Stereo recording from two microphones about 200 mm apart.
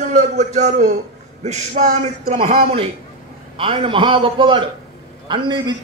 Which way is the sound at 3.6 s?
25° right (ahead or behind).